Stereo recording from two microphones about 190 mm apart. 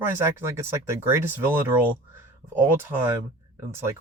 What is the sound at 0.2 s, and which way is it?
Speech, 15° right (ahead or behind).